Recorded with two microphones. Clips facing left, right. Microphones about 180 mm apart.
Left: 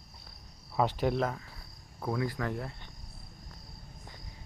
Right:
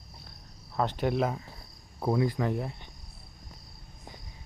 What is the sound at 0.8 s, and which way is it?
Speech, 5° left (ahead or behind).